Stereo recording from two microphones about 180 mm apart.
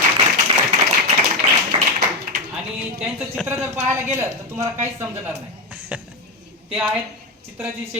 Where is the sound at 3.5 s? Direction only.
15° right (ahead or behind).